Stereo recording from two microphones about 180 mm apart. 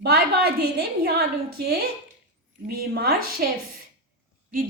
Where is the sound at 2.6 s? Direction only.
60° right (ahead or behind).